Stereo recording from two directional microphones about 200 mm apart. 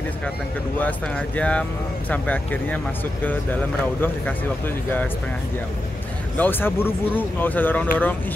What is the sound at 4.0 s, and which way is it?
Speech, 10° left (ahead or behind).